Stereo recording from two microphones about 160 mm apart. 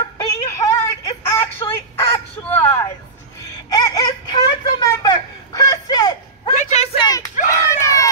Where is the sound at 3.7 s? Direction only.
20° left (ahead or behind).